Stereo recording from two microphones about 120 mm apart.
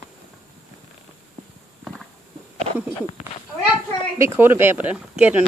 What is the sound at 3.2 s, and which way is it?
Speech, 65° left (ahead or behind).